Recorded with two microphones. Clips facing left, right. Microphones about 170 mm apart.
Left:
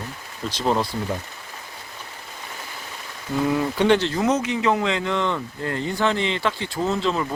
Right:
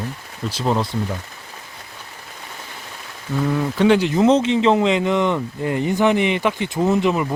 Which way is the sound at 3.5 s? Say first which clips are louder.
Right 3 dB; centre (ahead or behind).